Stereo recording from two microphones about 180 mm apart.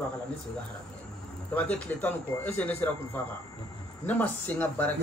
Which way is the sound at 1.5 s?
10° left (ahead or behind).